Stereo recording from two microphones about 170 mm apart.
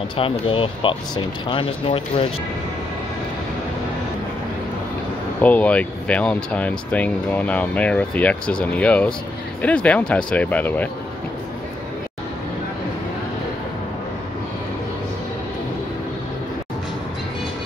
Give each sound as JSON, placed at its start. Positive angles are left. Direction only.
{"t": 0.2, "sound": "speech", "side_deg": 30}
{"t": 5.4, "sound": "speech", "side_deg": 10}